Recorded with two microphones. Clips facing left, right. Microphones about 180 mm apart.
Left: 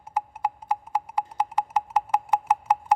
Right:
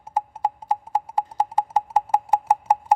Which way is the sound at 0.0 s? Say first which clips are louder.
Right 3 dB; 25° right (ahead or behind).